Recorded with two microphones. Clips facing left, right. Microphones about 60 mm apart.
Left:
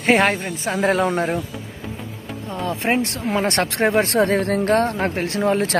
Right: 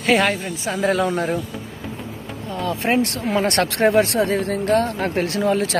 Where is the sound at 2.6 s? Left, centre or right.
Left.